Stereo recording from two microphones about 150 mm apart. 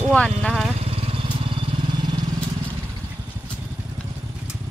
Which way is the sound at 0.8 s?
40° right (ahead or behind).